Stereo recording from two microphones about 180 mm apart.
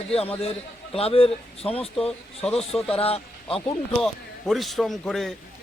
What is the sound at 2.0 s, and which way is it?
Speech, 5° left (ahead or behind).